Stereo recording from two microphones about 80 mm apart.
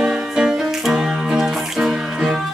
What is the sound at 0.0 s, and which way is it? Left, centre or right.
Music, centre.